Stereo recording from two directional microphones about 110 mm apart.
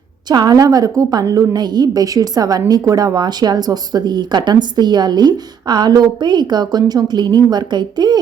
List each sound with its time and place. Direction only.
0.3 s a woman's voice: 40° right (ahead or behind)